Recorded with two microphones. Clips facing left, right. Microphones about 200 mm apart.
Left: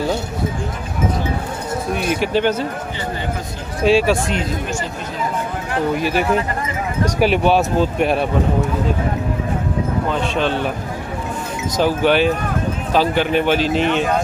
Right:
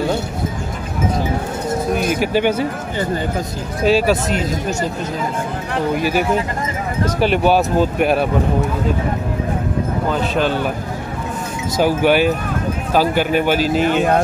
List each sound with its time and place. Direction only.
2.0 s a man's voice: 5° right (ahead or behind)
3.8 s speech: centre (ahead or behind)
4.3 s speech: 40° right (ahead or behind)
5.7 s speech: centre (ahead or behind)
10.1 s speech: 5° right (ahead or behind)
11.7 s a man's voice: 10° right (ahead or behind)